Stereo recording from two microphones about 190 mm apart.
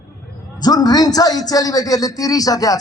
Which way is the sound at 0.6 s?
20° left (ahead or behind).